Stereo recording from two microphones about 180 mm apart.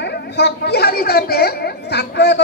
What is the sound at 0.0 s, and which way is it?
A woman's voice, 70° left (ahead or behind).